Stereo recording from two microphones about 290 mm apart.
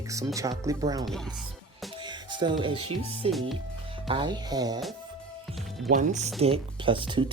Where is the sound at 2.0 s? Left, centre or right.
Centre.